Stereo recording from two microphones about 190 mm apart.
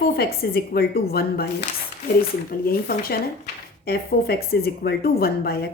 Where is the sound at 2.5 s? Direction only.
50° left (ahead or behind).